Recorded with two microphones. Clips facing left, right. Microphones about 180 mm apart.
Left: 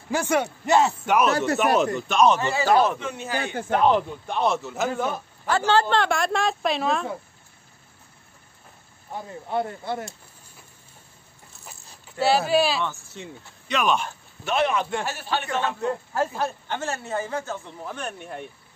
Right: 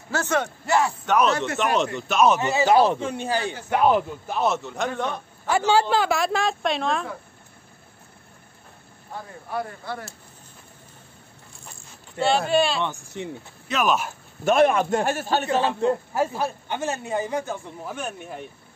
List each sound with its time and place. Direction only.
0.1 s a man's voice: 10° left (ahead or behind)
2.0 s a man's voice: 5° right (ahead or behind)
2.4 s speech: 20° right (ahead or behind)
3.7 s a man's voice: 5° right (ahead or behind)
5.7 s a man's voice: 10° right (ahead or behind)
9.1 s speech: 25° left (ahead or behind)
12.2 s a man's voice: 5° left (ahead or behind)
12.8 s speech: 20° right (ahead or behind)
13.7 s a man's voice: centre (ahead or behind)
14.4 s a man's voice: 50° right (ahead or behind)
16.1 s speech: 10° right (ahead or behind)